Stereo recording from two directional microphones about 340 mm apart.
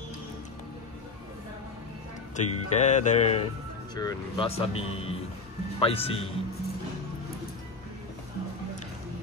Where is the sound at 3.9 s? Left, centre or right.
Centre.